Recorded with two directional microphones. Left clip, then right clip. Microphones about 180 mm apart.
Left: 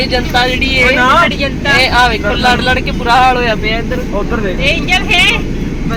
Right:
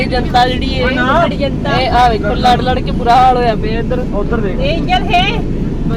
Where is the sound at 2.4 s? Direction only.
35° left (ahead or behind).